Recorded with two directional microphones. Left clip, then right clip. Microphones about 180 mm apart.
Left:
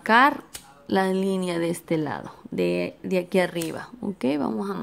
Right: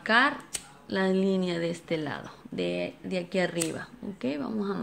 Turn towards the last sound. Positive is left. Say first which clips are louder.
# left 5 dB
turn(degrees=50)  # may be behind; listen again after turning